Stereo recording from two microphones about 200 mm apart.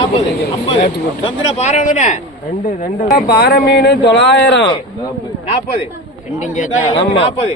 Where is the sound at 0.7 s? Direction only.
25° left (ahead or behind).